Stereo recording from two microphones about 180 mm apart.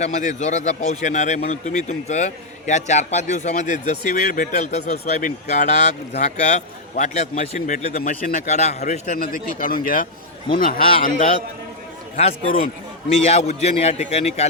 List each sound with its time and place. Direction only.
0.0 s a man's voice: 40° left (ahead or behind)
10.8 s a man's voice: 30° left (ahead or behind)
12.1 s a man's voice: 35° left (ahead or behind)